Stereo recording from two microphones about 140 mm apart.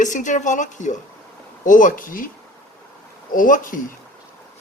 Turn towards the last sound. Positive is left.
turn(degrees=75)  # may be behind; listen again after turning